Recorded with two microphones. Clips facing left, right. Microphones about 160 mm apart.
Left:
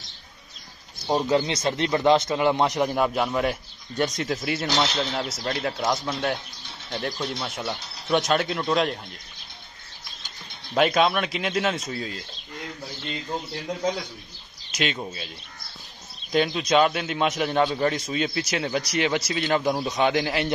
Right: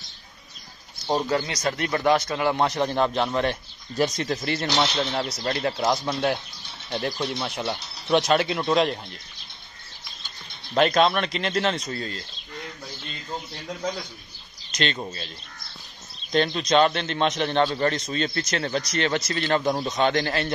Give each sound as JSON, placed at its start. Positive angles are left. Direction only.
{"t": 1.3, "sound": "speech", "side_deg": 25}
{"t": 10.7, "sound": "speech", "side_deg": 5}
{"t": 14.7, "sound": "a man's voice", "side_deg": 5}